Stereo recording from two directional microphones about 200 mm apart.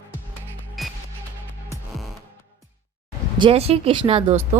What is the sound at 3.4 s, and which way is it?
Speech, 30° right (ahead or behind).